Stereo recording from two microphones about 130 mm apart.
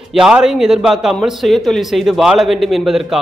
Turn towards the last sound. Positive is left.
turn(degrees=0)  # may be behind; listen again after turning